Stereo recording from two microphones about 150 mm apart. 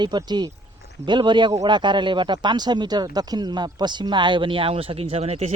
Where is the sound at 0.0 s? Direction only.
30° right (ahead or behind).